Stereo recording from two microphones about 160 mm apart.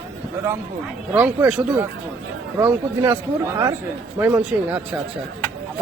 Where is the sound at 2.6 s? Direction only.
20° right (ahead or behind).